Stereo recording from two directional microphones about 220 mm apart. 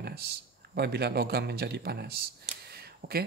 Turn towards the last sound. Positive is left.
turn(degrees=-45)  # may be behind; listen again after turning